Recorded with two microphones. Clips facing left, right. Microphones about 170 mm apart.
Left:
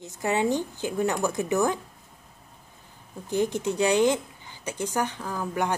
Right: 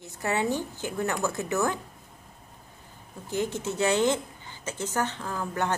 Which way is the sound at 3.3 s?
15° left (ahead or behind).